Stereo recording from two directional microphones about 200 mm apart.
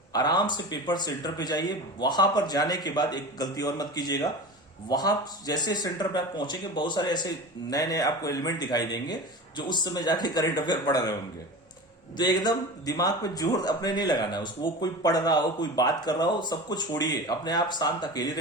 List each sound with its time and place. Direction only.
0.1 s speech: 20° left (ahead or behind)
12.1 s speech: 20° left (ahead or behind)